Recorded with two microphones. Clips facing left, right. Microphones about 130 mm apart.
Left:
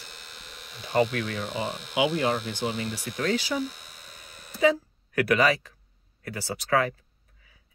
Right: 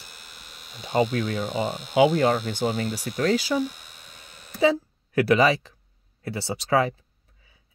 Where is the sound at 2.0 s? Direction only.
45° right (ahead or behind).